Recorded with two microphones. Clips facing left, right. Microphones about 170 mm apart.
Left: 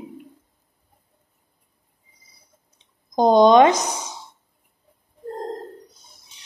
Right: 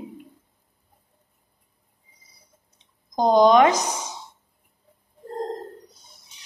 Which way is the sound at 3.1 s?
25° left (ahead or behind).